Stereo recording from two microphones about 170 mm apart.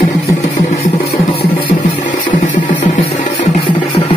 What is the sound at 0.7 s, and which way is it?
Music, 40° left (ahead or behind).